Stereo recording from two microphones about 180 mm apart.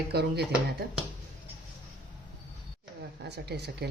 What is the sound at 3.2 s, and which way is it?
Speech, 65° right (ahead or behind).